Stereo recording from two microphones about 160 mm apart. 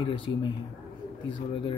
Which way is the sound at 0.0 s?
30° left (ahead or behind).